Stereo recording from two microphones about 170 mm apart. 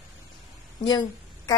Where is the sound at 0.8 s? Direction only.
25° left (ahead or behind).